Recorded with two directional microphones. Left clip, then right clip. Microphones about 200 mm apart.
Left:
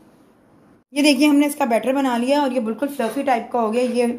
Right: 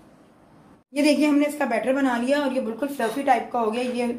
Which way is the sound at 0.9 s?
40° left (ahead or behind).